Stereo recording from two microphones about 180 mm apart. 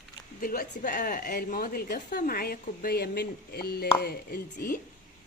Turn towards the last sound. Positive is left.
turn(degrees=55)  # may be behind; listen again after turning